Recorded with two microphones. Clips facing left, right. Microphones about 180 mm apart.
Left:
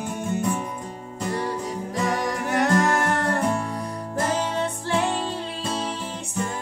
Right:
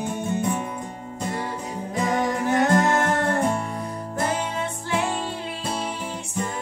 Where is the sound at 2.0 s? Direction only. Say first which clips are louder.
Right 3 dB; 25° right (ahead or behind).